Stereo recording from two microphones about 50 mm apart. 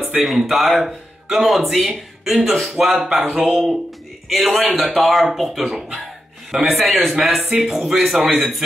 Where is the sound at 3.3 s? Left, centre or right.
Right.